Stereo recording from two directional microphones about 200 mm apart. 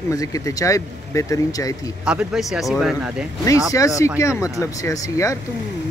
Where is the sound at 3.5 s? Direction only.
15° left (ahead or behind).